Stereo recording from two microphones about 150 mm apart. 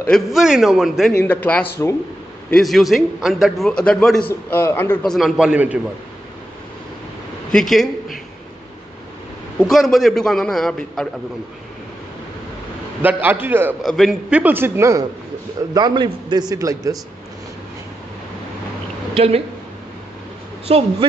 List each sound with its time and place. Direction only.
0.0 s a man's voice: centre (ahead or behind)
1.1 s a man's voice: 10° left (ahead or behind)
2.5 s a man's voice: centre (ahead or behind)
4.3 s a man's voice: 15° left (ahead or behind)
5.0 s a man's voice: centre (ahead or behind)
7.5 s a man's voice: centre (ahead or behind)
9.6 s a man's voice: centre (ahead or behind)
13.0 s a man's voice: 10° right (ahead or behind)
13.8 s a man's voice: centre (ahead or behind)
14.4 s a man's voice: 15° right (ahead or behind)
15.7 s a man's voice: 30° right (ahead or behind)
19.1 s a woman's voice: 40° right (ahead or behind)
20.6 s speech: 45° right (ahead or behind)